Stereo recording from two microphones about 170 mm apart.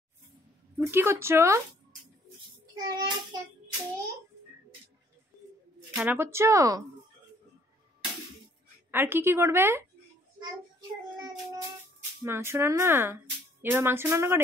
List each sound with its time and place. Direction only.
0.7 s speech: 15° right (ahead or behind)
2.6 s a child's voice: 25° right (ahead or behind)
5.9 s speech: 10° right (ahead or behind)
8.9 s speech: 15° right (ahead or behind)
12.2 s speech: 15° right (ahead or behind)